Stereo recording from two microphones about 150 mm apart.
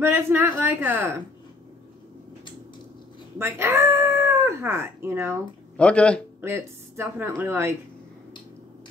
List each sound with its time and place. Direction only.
0.0 s speech: 15° right (ahead or behind)
3.3 s speech: 15° right (ahead or behind)
5.8 s a man's voice: 5° left (ahead or behind)
6.4 s speech: 15° right (ahead or behind)